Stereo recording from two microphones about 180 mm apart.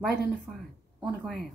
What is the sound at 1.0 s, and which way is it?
Speech, centre (ahead or behind).